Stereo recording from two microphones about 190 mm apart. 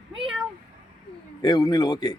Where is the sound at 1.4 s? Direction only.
20° left (ahead or behind).